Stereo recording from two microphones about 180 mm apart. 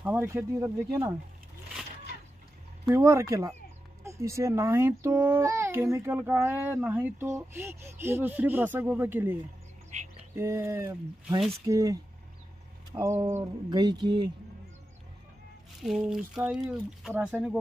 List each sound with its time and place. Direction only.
0.0 s a child's voice: 10° right (ahead or behind)
2.9 s a child's voice: 15° right (ahead or behind)
15.8 s speech: centre (ahead or behind)